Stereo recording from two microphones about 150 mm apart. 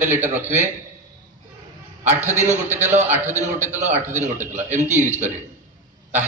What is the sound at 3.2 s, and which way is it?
A man's voice, 50° right (ahead or behind).